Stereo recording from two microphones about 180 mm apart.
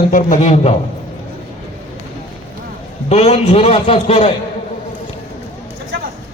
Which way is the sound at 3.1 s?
35° left (ahead or behind).